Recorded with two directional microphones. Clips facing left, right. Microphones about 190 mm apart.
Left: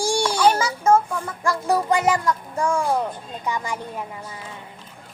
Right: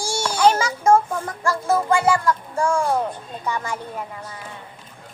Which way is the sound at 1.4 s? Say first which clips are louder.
Even; 15° left (ahead or behind).